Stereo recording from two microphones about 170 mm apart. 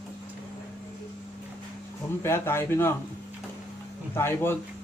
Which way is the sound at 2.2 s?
15° left (ahead or behind).